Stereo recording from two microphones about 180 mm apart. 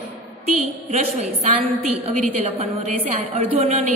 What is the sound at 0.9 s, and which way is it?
A woman's voice, 35° right (ahead or behind).